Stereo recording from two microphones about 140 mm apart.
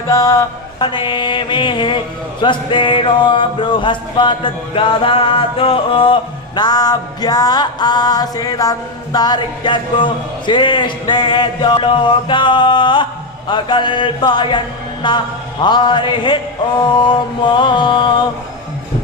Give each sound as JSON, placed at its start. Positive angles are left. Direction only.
{"t": 0.1, "sound": "a man's voice", "side_deg": 25}
{"t": 6.6, "sound": "music", "side_deg": 30}
{"t": 9.1, "sound": "a man's voice", "side_deg": 30}